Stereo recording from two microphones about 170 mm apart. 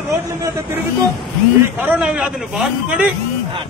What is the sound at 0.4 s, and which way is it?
Speech, 20° right (ahead or behind).